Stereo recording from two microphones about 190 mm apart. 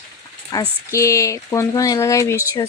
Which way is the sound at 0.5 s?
20° left (ahead or behind).